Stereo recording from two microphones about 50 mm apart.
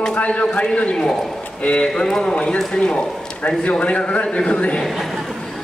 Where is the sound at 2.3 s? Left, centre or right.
Left.